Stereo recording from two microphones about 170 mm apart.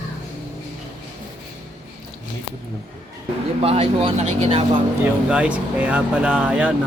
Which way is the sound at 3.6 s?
35° right (ahead or behind).